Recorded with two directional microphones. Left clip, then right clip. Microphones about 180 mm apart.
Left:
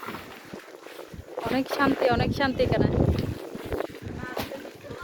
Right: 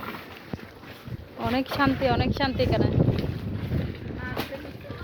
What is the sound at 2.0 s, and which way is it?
Speech, 35° left (ahead or behind).